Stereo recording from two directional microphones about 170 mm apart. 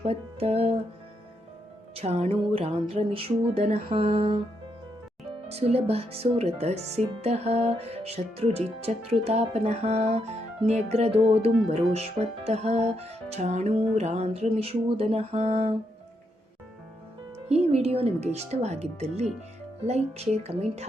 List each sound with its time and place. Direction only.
0.0 s music: 35° right (ahead or behind)
2.0 s speech: 35° right (ahead or behind)
5.5 s speech: 40° right (ahead or behind)
17.5 s speech: 40° right (ahead or behind)